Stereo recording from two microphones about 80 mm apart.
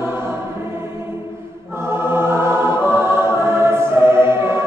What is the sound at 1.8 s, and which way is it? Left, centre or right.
Choir, right.